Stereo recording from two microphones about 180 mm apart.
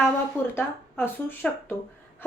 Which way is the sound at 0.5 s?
10° left (ahead or behind).